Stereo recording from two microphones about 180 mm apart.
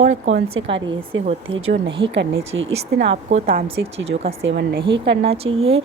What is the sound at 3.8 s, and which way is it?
Speech, 80° right.